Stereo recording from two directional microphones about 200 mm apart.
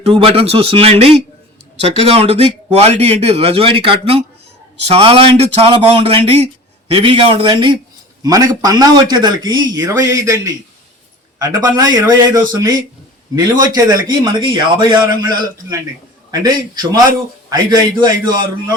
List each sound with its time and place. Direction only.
0.0 s a man's voice: 30° right (ahead or behind)
17.5 s a man's voice: 20° right (ahead or behind)